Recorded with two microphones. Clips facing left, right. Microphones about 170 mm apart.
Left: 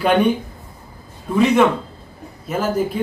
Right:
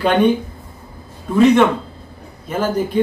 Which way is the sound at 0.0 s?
10° left (ahead or behind).